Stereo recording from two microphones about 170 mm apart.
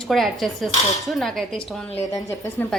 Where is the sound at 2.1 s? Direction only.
20° left (ahead or behind).